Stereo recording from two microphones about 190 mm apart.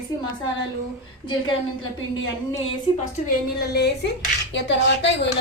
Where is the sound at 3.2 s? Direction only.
55° left (ahead or behind).